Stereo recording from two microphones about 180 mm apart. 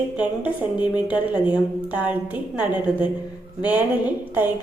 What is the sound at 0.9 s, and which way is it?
A woman's voice, 5° right (ahead or behind).